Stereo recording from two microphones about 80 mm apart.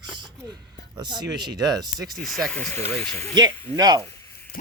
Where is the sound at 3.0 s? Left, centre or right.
Left.